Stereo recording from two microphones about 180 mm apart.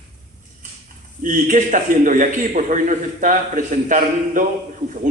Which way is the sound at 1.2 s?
45° right (ahead or behind).